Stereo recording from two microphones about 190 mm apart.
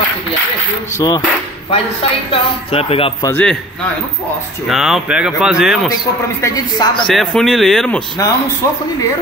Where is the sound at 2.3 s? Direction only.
30° left (ahead or behind).